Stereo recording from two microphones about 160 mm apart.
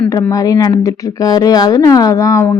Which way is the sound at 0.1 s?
20° left (ahead or behind).